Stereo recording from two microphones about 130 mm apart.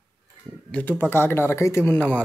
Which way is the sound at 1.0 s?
15° left (ahead or behind).